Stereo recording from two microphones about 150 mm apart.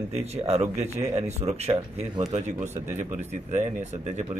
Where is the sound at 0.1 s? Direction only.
45° right (ahead or behind).